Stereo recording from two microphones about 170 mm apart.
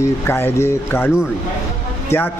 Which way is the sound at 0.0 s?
15° left (ahead or behind).